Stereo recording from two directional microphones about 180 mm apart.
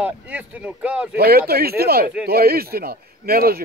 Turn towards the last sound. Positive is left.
turn(degrees=-55)  # may be behind; listen again after turning